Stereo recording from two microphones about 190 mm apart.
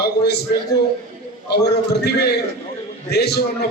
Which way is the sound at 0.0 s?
60° left (ahead or behind).